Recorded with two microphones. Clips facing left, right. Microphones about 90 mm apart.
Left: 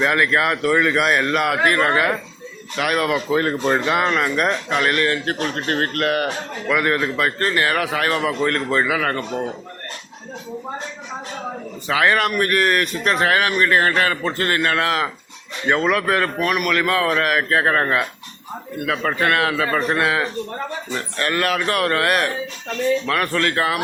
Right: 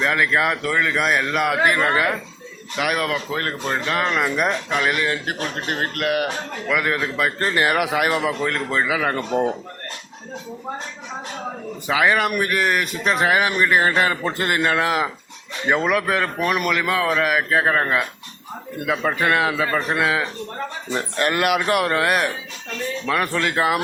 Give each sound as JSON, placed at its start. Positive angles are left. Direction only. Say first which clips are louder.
{"t": 0.0, "sound": "speech", "louder": "left 1 dB", "side_deg": 0}
{"t": 3.1, "sound": "speech", "louder": "left 5 dB", "side_deg": 10}
{"t": 7.3, "sound": "a man's voice", "louder": "even", "side_deg": -15}
{"t": 9.3, "sound": "speech", "louder": "right 5 dB", "side_deg": -25}
{"t": 11.9, "sound": "a man's voice", "louder": "left 1 dB", "side_deg": -5}
{"t": 20.9, "sound": "a man's voice", "louder": "right 2 dB", "side_deg": -20}